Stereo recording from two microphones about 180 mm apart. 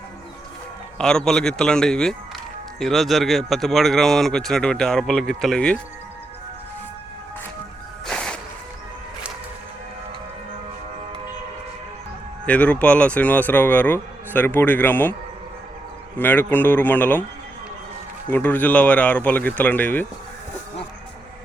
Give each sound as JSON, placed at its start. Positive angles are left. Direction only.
{"t": 0.9, "sound": "speech", "side_deg": 5}
{"t": 8.0, "sound": "music", "side_deg": 5}
{"t": 12.5, "sound": "speech", "side_deg": 10}
{"t": 16.1, "sound": "speech", "side_deg": 10}
{"t": 18.3, "sound": "speech", "side_deg": 10}